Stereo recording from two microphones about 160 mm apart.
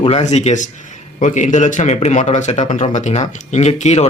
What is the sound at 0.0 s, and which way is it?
Speech, 40° left (ahead or behind).